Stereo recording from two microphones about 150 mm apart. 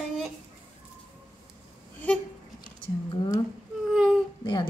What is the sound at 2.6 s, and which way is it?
Speech, 30° left (ahead or behind).